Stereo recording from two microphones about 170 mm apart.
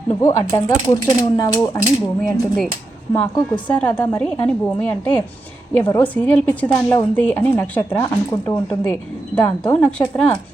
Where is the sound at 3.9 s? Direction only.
10° left (ahead or behind).